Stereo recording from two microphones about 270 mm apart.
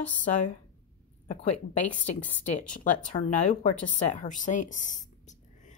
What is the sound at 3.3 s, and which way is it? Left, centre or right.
A woman's voice, left.